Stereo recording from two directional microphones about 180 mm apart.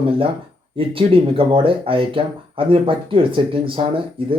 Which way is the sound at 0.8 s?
30° right (ahead or behind).